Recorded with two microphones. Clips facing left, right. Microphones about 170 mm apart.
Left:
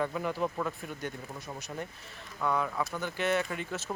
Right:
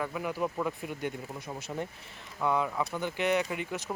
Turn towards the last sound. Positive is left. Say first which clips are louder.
# right 2 dB
turn(degrees=-15)  # may be behind; listen again after turning